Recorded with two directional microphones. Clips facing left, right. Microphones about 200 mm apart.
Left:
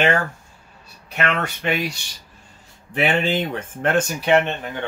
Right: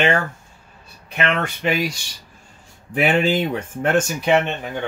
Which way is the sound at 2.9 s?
10° right (ahead or behind).